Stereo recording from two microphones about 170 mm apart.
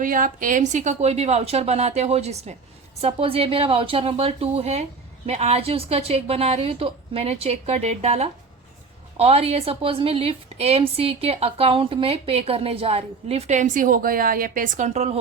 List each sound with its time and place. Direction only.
0.0 s a woman's voice: 50° right (ahead or behind)